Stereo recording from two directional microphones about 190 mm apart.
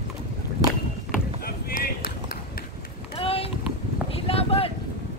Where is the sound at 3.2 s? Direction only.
30° left (ahead or behind).